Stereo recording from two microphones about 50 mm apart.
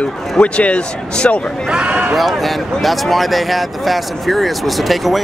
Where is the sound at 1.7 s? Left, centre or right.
Right.